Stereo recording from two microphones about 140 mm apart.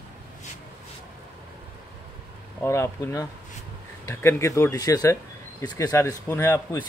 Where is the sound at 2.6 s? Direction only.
20° left (ahead or behind).